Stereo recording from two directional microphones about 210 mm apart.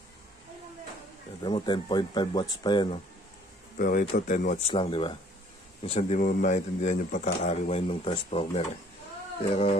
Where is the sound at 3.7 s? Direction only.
45° left (ahead or behind).